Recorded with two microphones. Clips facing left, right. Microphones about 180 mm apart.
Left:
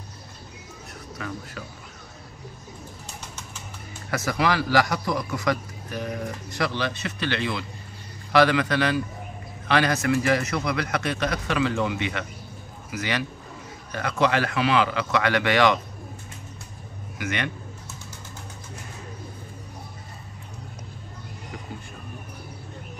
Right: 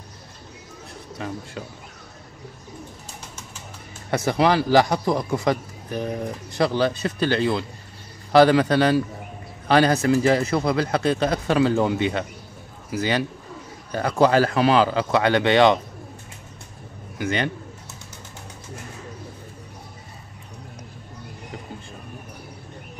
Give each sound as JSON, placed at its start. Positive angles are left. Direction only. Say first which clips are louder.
{"t": 1.1, "sound": "a man's voice", "louder": "right 3 dB", "side_deg": -25}
{"t": 4.1, "sound": "a man's voice", "louder": "right 5 dB", "side_deg": -30}
{"t": 17.2, "sound": "a man's voice", "louder": "right 5 dB", "side_deg": -30}